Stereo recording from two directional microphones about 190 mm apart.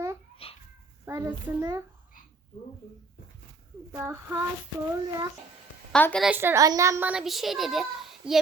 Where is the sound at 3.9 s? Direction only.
15° right (ahead or behind).